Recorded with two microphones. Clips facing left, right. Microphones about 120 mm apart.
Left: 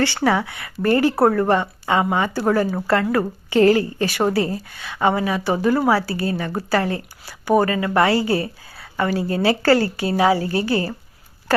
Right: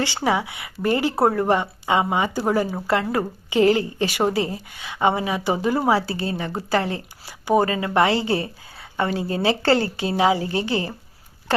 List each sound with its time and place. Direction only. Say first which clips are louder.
0.0 s speech: left 3 dB; 15° right (ahead or behind)